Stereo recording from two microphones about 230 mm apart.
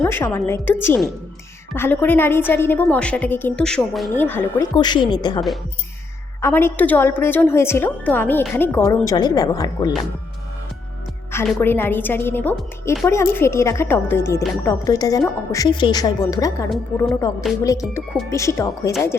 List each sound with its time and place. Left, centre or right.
0.0 s a woman's voice: centre
6.4 s a woman's voice: centre
11.3 s a woman's voice: centre
16.6 s speech: centre
17.6 s a woman's voice: centre